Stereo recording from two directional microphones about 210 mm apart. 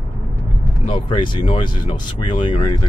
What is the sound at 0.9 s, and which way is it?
Speech, 25° left (ahead or behind).